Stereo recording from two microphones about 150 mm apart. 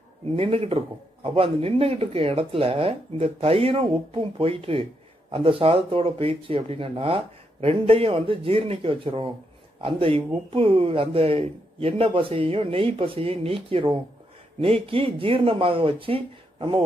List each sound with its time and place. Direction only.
0.4 s speech: 35° right (ahead or behind)